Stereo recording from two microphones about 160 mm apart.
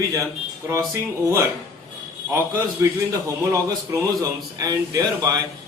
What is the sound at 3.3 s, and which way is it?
A man's voice, 20° right (ahead or behind).